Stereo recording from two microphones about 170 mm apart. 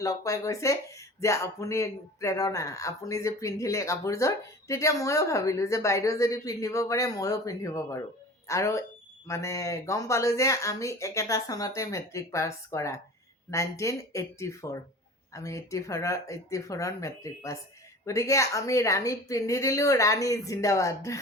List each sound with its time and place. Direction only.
0.0 s speech: 20° left (ahead or behind)